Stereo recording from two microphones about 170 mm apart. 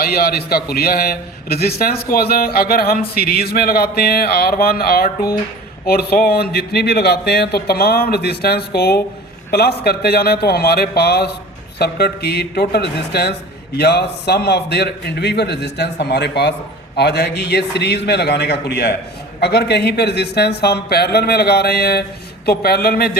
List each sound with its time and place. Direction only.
0.0 s a man's voice: 65° left (ahead or behind)